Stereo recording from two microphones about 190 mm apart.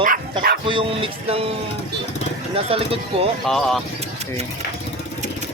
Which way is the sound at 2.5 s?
30° right (ahead or behind).